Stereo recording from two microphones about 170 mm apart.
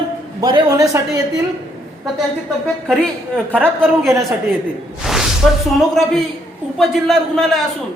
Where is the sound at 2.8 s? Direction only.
5° left (ahead or behind).